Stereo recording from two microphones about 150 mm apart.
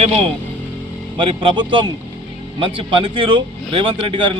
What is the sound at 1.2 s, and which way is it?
Speech, 35° right (ahead or behind).